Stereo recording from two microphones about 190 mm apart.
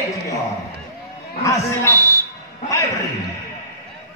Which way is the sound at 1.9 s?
15° right (ahead or behind).